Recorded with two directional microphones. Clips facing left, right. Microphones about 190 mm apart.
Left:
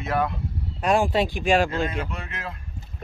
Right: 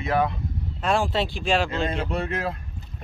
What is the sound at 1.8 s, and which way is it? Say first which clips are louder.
Speech: right 4 dB; 35° right (ahead or behind).